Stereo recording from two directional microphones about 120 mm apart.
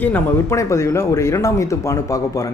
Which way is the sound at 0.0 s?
20° left (ahead or behind).